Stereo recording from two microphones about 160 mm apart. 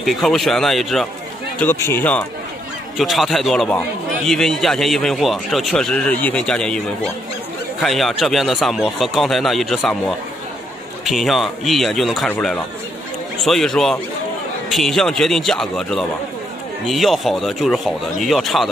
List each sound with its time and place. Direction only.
0.0 s a man's voice: centre (ahead or behind)
1.6 s speech: 15° left (ahead or behind)
3.0 s a man's voice: centre (ahead or behind)
7.8 s a man's voice: centre (ahead or behind)